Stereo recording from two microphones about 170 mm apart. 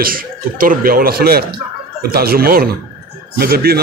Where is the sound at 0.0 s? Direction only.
55° right (ahead or behind).